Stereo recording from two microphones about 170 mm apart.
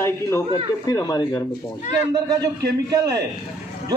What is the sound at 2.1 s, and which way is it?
A man's voice, 25° right (ahead or behind).